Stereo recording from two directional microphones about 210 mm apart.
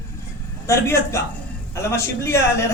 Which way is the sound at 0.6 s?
15° left (ahead or behind).